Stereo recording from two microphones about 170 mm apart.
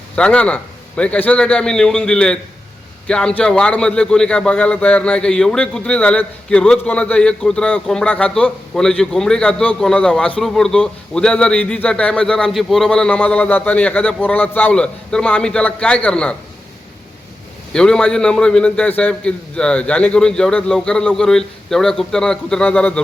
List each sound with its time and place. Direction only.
0.2 s a man's voice: 5° left (ahead or behind)
17.7 s a man's voice: 5° left (ahead or behind)